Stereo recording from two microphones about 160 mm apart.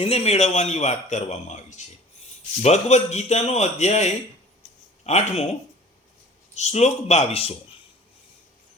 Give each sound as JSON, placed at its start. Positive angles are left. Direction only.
{"t": 0.0, "sound": "speech", "side_deg": 40}
{"t": 6.5, "sound": "speech", "side_deg": 45}